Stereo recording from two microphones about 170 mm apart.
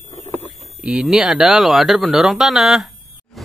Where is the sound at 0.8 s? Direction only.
5° right (ahead or behind).